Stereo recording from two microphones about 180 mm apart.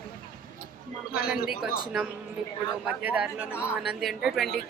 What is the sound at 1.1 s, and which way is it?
A man's voice, 5° right (ahead or behind).